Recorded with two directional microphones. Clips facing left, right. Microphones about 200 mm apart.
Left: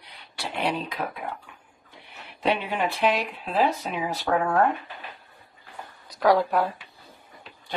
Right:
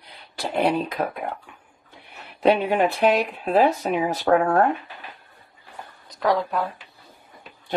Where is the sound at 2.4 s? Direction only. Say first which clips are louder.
Right 7 dB; 45° right (ahead or behind).